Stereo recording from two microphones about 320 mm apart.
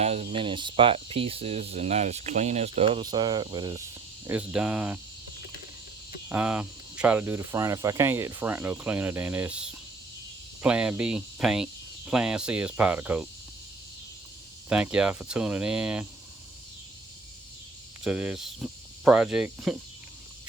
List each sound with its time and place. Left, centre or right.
0.0 s speech: centre
6.2 s speech: centre
14.7 s speech: centre
18.0 s speech: centre